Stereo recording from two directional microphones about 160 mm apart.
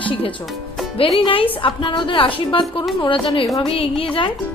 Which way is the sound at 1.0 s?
35° left (ahead or behind).